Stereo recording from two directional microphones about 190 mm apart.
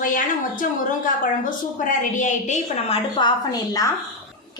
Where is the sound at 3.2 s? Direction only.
20° left (ahead or behind).